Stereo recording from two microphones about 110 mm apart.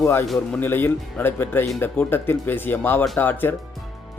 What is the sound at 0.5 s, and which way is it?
Speech, 20° left (ahead or behind).